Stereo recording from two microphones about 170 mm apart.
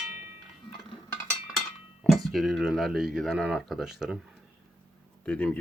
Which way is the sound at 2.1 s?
Centre (ahead or behind).